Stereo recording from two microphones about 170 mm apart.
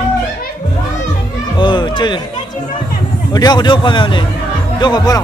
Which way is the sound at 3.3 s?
25° left (ahead or behind).